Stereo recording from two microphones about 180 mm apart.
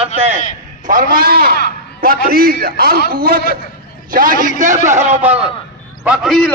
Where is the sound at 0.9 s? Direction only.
50° right (ahead or behind).